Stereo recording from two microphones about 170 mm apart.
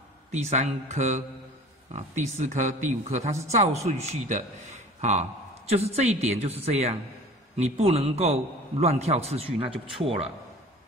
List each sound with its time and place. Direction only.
0.3 s speech: 40° right (ahead or behind)
5.7 s a man's voice: 35° right (ahead or behind)